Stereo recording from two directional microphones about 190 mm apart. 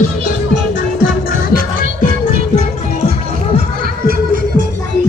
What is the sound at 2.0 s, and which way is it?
Music, 45° left (ahead or behind).